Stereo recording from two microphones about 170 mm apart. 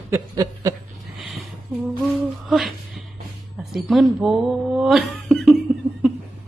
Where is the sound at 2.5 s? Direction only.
Centre (ahead or behind).